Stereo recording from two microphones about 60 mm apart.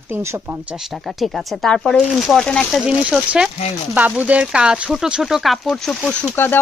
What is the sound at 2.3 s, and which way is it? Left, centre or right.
Speech, centre.